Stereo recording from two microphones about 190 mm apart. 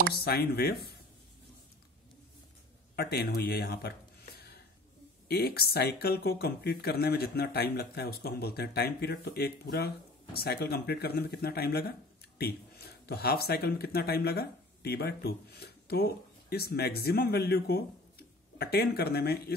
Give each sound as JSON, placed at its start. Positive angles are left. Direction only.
{"t": 0.1, "sound": "speech", "side_deg": 55}
{"t": 3.0, "sound": "speech", "side_deg": 55}